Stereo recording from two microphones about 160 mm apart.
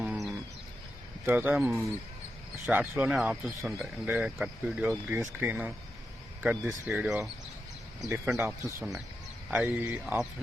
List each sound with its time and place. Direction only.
0.0 s bird: 5° right (ahead or behind)
1.2 s speech: 15° right (ahead or behind)
1.5 s speech: centre (ahead or behind)